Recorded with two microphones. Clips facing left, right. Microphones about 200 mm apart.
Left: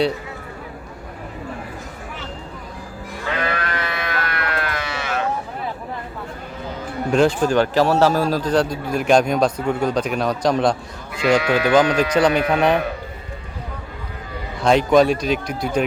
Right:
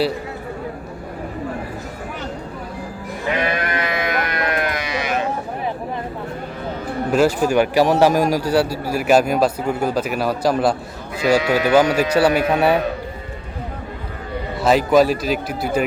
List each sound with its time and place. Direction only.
3.2 s sheep: 15° right (ahead or behind)
7.1 s a man's voice: 5° right (ahead or behind)
14.6 s a man's voice: 5° right (ahead or behind)